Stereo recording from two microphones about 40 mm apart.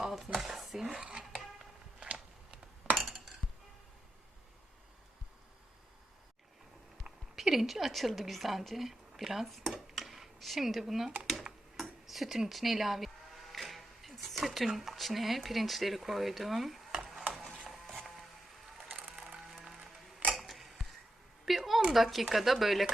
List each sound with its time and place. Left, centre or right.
0.0 s dishes: centre
1.3 s music: centre
7.4 s a woman's voice: centre
11.8 s a sound: centre
12.5 s speech: centre
13.5 s music: centre
14.8 s speech: centre
16.9 s stir: centre
17.3 s music: centre
17.7 s a sound: centre
19.4 s music: centre
20.3 s creak: centre
21.4 s a sound: centre
21.9 s speech: centre